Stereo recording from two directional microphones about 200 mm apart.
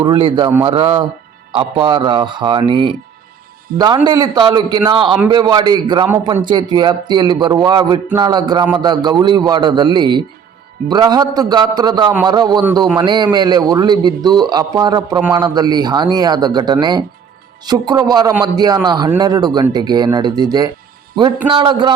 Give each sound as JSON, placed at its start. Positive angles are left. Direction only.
{"t": 0.0, "sound": "a man's voice", "side_deg": -25}